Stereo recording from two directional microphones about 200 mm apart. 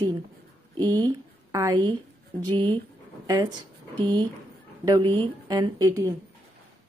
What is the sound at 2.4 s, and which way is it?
Speech, 25° right (ahead or behind).